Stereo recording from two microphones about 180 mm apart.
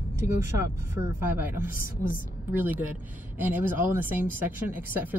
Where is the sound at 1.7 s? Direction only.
50° left (ahead or behind).